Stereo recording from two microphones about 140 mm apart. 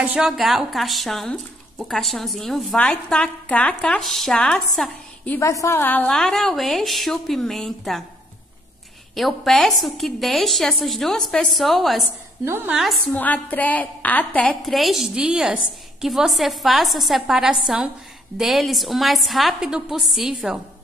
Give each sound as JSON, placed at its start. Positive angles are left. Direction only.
{"t": 0.0, "sound": "speech", "side_deg": -5}
{"t": 5.4, "sound": "speech", "side_deg": 20}
{"t": 9.1, "sound": "speech", "side_deg": 0}
{"t": 12.4, "sound": "a woman's voice", "side_deg": -15}
{"t": 13.0, "sound": "speech", "side_deg": 10}